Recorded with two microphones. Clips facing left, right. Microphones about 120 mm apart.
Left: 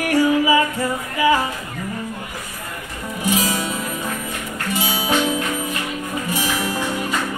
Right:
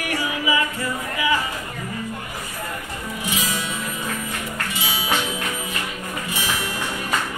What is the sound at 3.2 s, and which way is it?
Music, 40° left (ahead or behind).